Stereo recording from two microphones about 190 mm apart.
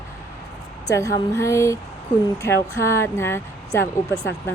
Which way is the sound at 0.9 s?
15° left (ahead or behind).